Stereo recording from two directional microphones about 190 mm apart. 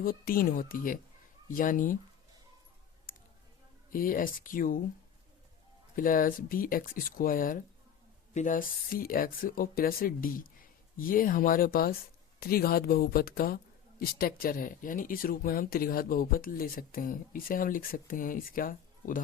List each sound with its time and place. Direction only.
0.0 s speech: 50° left (ahead or behind)
3.9 s speech: 45° left (ahead or behind)
6.0 s speech: 45° left (ahead or behind)